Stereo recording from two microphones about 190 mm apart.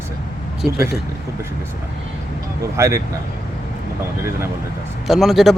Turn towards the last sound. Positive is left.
turn(degrees=0)  # may be behind; listen again after turning